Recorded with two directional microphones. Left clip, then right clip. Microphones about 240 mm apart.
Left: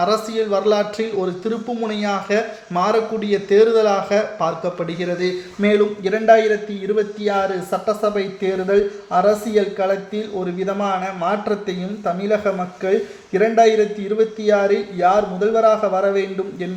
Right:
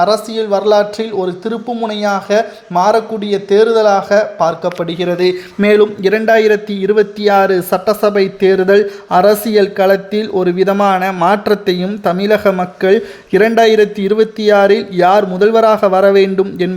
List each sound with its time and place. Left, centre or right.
0.0 s a man's voice: centre; by 16.6 s right